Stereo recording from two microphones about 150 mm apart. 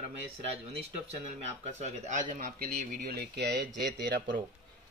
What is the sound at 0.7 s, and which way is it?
Speech, 45° right (ahead or behind).